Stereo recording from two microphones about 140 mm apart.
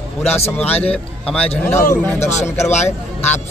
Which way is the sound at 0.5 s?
10° left (ahead or behind).